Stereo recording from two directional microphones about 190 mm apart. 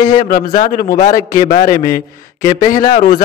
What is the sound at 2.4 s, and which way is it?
Speech, 15° left (ahead or behind).